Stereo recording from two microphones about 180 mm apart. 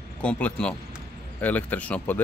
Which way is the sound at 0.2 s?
5° left (ahead or behind).